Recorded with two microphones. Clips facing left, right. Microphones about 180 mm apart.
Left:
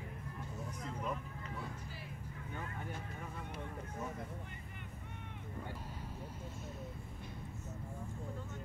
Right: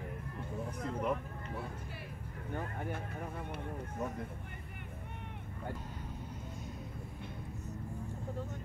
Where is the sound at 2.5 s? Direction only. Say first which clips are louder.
Right 6 dB; 50° right (ahead or behind).